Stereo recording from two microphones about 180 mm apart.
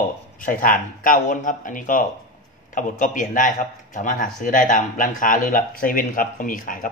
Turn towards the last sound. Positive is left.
turn(degrees=50)  # may be behind; listen again after turning